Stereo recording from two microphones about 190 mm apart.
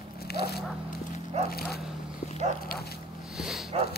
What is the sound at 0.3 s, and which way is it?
Dog, 55° left (ahead or behind).